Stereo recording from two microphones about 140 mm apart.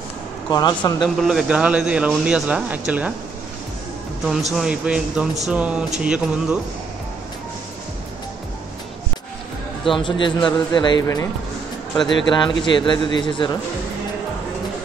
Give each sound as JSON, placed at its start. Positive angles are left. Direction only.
{"t": 0.5, "sound": "speech", "side_deg": 30}
{"t": 1.0, "sound": "speech", "side_deg": 0}
{"t": 4.3, "sound": "a man's voice", "side_deg": 0}
{"t": 9.9, "sound": "a man's voice", "side_deg": 35}
{"t": 12.3, "sound": "a man's voice", "side_deg": 30}